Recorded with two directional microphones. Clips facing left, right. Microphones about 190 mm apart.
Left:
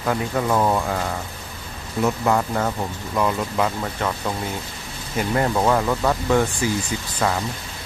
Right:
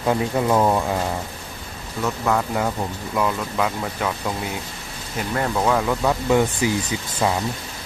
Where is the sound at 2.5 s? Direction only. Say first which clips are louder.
Even; centre (ahead or behind).